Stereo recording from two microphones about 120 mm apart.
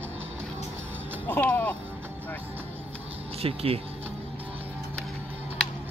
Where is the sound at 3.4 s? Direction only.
55° right (ahead or behind).